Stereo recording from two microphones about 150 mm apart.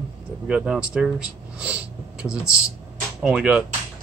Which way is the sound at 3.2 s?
5° right (ahead or behind).